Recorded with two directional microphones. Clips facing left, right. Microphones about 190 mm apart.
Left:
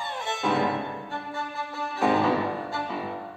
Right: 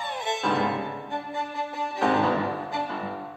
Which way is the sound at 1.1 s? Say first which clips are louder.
Right 2 dB; 20° right (ahead or behind).